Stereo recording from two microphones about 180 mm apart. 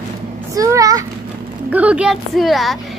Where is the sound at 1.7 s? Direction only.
10° right (ahead or behind).